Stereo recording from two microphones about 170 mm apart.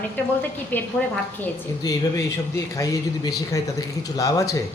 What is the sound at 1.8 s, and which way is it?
Speech, 20° left (ahead or behind).